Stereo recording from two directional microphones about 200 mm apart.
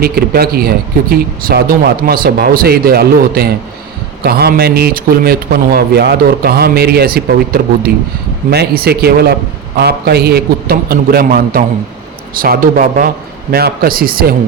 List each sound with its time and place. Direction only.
0.0 s speech: 50° right (ahead or behind)